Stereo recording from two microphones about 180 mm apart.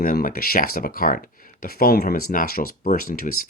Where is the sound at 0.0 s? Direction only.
50° left (ahead or behind).